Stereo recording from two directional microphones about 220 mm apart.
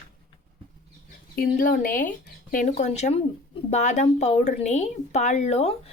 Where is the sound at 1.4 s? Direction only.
40° left (ahead or behind).